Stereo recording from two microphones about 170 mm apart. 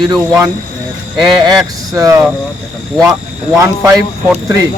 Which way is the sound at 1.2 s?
25° right (ahead or behind).